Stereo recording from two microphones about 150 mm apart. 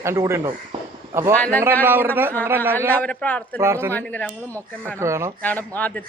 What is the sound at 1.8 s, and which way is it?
Speech, 15° right (ahead or behind).